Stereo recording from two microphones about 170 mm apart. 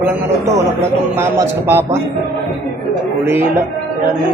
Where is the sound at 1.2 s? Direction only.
15° right (ahead or behind).